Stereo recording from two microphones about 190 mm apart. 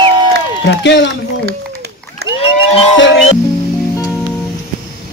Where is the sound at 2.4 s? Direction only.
30° left (ahead or behind).